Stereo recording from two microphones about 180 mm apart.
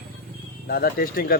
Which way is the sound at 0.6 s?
55° left (ahead or behind).